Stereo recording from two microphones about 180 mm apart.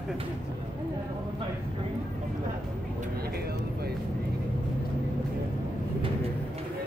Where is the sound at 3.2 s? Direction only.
60° right (ahead or behind).